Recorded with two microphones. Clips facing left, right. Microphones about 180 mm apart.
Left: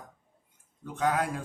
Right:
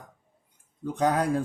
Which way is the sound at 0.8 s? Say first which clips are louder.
Right 4 dB; 35° right (ahead or behind).